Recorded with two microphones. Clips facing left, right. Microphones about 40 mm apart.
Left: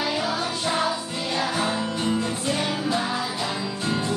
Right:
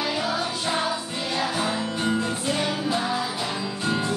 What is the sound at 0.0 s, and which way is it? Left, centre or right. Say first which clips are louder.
Music: even; centre.